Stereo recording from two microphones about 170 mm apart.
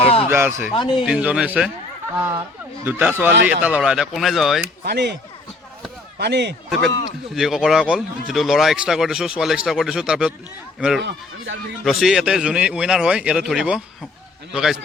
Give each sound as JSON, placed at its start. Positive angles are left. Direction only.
{"t": 0.0, "sound": "a sound", "side_deg": 35}
{"t": 0.3, "sound": "speech", "side_deg": -15}
{"t": 0.7, "sound": "speech", "side_deg": 30}
{"t": 1.0, "sound": "speech", "side_deg": -5}
{"t": 2.8, "sound": "speech", "side_deg": -10}
{"t": 4.9, "sound": "speech", "side_deg": -80}
{"t": 6.1, "sound": "speech", "side_deg": -80}
{"t": 6.7, "sound": "speech", "side_deg": 0}